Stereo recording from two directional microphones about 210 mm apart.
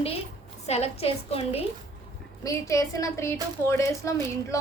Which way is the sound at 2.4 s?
15° left (ahead or behind).